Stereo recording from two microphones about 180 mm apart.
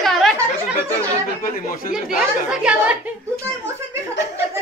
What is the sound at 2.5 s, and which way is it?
Speech, 5° right (ahead or behind).